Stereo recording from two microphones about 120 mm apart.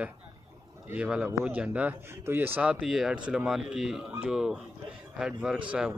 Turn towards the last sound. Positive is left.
turn(degrees=-5)  # may be behind; listen again after turning